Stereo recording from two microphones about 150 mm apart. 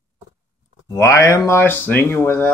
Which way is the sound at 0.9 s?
20° left (ahead or behind).